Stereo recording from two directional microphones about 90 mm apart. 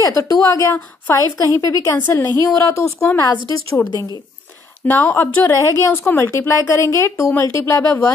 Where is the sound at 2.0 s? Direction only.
20° left (ahead or behind).